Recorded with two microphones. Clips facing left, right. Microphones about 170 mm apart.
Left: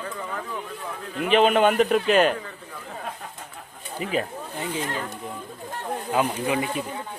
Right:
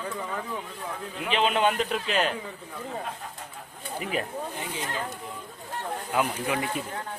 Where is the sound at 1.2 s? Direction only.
55° left (ahead or behind).